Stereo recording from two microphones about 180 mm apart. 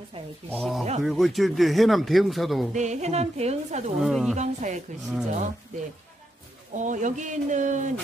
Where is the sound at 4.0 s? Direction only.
Centre (ahead or behind).